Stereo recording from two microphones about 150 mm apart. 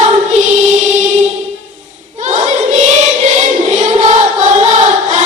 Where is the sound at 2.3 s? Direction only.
50° right (ahead or behind).